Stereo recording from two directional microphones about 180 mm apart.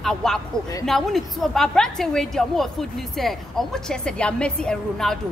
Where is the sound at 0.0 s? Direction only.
Centre (ahead or behind).